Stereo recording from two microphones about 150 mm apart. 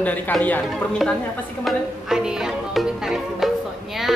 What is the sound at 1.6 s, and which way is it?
Music, 5° right (ahead or behind).